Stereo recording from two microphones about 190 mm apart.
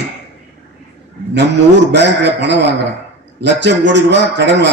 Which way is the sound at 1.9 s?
65° right (ahead or behind).